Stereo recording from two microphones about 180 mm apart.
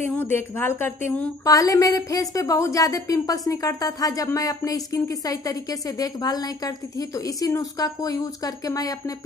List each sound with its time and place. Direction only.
0.1 s a woman's voice: 10° left (ahead or behind)